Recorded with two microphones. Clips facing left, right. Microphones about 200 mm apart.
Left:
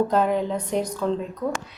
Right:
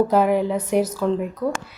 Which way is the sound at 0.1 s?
10° right (ahead or behind).